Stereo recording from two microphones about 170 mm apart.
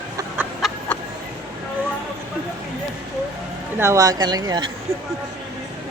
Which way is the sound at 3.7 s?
15° right (ahead or behind).